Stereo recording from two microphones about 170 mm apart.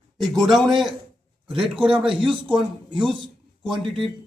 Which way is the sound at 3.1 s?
30° right (ahead or behind).